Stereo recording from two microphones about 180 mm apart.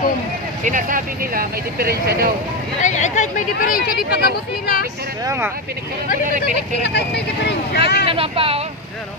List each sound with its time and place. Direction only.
0.7 s speech: 45° right (ahead or behind)
2.8 s speech: 40° left (ahead or behind); by 4.8 s 60° left (ahead or behind)
5.2 s speech: 15° right (ahead or behind)
6.8 s speech: 70° left (ahead or behind)
8.1 s speech: 30° right (ahead or behind)